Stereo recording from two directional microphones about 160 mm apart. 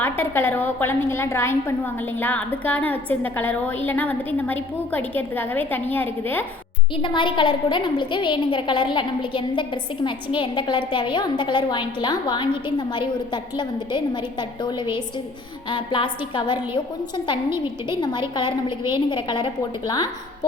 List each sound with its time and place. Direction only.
0.0 s a woman's voice: 10° left (ahead or behind)
6.9 s a woman's voice: 30° left (ahead or behind)
17.8 s a woman's voice: 30° left (ahead or behind)